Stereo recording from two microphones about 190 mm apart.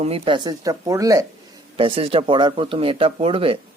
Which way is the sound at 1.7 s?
30° right (ahead or behind).